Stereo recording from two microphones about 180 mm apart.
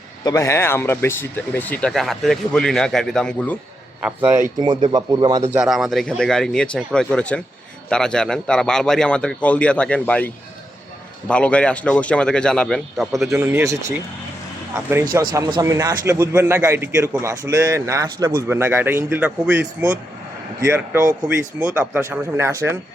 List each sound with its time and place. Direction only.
0.3 s speech: 15° left (ahead or behind)
4.0 s a man's voice: 10° right (ahead or behind)
4.6 s speech: 25° right (ahead or behind)
5.5 s a man's voice: centre (ahead or behind)
13.3 s a man's voice: 15° right (ahead or behind)
14.8 s a man's voice: 15° right (ahead or behind)
21.1 s speech: 20° right (ahead or behind)
21.6 s a man's voice: 5° right (ahead or behind)